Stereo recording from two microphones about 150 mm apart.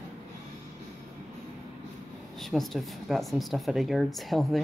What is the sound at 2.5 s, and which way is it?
Speech, centre (ahead or behind).